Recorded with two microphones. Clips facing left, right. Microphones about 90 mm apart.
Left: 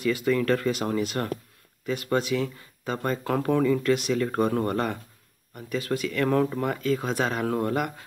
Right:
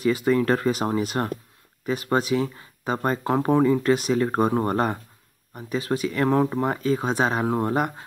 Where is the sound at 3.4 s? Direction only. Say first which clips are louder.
Right 3 dB; 30° right (ahead or behind).